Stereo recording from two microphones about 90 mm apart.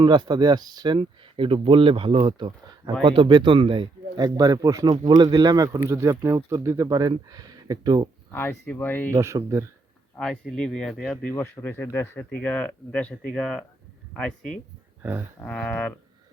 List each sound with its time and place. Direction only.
0.0 s speech: 60° right (ahead or behind)
3.0 s speech: 70° right (ahead or behind)
4.2 s speech: 45° right (ahead or behind)
5.0 s speech: 55° right (ahead or behind); by 6.8 s 35° right (ahead or behind)
6.8 s speech: 50° right (ahead or behind)
8.3 s speech: 25° left (ahead or behind)
9.1 s speech: 35° right (ahead or behind)
10.5 s speech: 10° left (ahead or behind)
11.3 s speech: 20° left (ahead or behind)
13.4 s speech: centre (ahead or behind)
15.0 s speech: 20° right (ahead or behind)
15.4 s speech: 10° left (ahead or behind)